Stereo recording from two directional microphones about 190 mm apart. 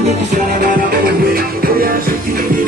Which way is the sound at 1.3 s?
50° right (ahead or behind).